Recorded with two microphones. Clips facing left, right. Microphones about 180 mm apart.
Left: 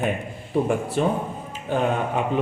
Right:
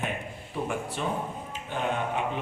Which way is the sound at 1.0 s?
45° left (ahead or behind).